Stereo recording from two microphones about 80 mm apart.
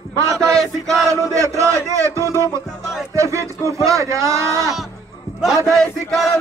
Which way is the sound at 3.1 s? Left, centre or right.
Right.